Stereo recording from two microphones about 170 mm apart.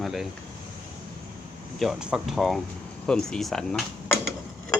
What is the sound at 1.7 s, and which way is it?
Speech, centre (ahead or behind).